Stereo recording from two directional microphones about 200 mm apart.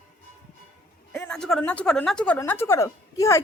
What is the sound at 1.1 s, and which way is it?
A woman's voice, 5° left (ahead or behind).